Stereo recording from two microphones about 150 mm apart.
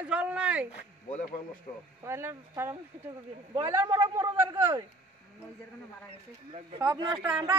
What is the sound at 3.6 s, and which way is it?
A man's voice, 30° right (ahead or behind).